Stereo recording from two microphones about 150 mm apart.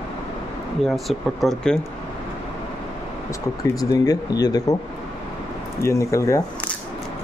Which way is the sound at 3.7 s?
25° left (ahead or behind).